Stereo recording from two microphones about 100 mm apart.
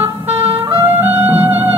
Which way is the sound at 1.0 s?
20° right (ahead or behind).